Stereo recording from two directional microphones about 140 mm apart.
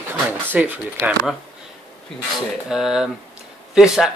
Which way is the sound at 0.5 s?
10° right (ahead or behind).